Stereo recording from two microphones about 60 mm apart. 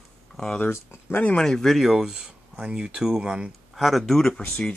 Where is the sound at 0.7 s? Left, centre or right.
Left.